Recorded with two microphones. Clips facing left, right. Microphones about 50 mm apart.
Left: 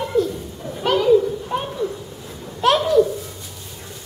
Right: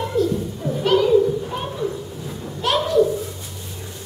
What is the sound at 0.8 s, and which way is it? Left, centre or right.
Children playing, centre.